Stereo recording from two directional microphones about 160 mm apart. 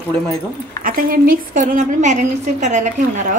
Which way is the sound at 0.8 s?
60° right (ahead or behind).